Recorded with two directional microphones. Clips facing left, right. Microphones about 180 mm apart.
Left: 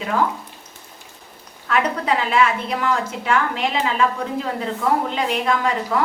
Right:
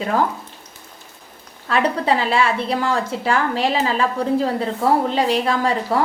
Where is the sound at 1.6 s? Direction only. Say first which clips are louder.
Right 2 dB; 30° right (ahead or behind).